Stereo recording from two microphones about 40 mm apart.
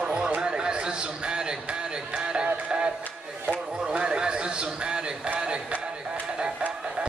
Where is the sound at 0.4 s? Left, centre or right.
Right.